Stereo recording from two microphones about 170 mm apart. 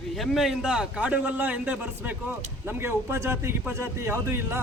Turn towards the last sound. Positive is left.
turn(degrees=-15)  # may be behind; listen again after turning